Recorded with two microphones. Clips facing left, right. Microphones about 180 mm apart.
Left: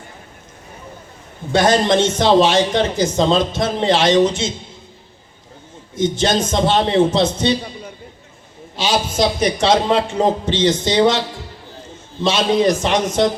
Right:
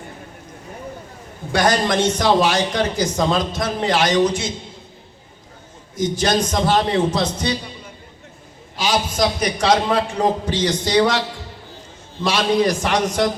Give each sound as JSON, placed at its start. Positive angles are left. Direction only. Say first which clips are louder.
{"t": 1.5, "sound": "a man's voice", "louder": "left 4 dB", "side_deg": 25}
{"t": 6.0, "sound": "a man's voice", "louder": "left 2 dB", "side_deg": 25}
{"t": 8.7, "sound": "a man's voice", "louder": "left 2 dB", "side_deg": 25}
{"t": 12.2, "sound": "a man's voice", "louder": "left 2 dB", "side_deg": 20}